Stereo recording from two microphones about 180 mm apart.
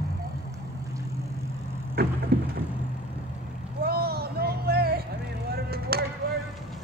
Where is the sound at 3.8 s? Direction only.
60° right (ahead or behind).